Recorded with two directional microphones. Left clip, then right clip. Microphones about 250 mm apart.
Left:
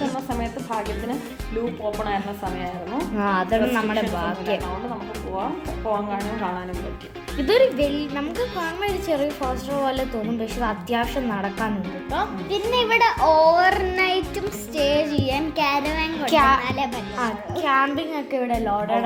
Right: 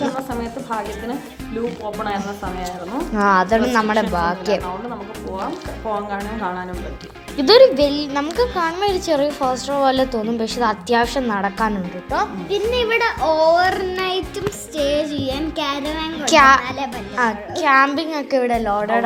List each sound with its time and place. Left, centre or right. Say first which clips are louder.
3.2 s speech: right 7 dB; right
7.3 s speech: right 7 dB; right
12.5 s a child's voice: right 1 dB; centre
16.2 s a woman's voice: right 6 dB; right
16.6 s a child's voice: even; centre
17.2 s a woman's voice: right 7 dB; right